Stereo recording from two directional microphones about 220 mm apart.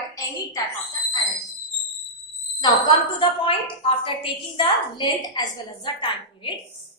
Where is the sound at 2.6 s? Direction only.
20° left (ahead or behind).